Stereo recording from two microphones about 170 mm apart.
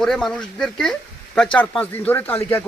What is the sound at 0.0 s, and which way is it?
Speech, 5° left (ahead or behind).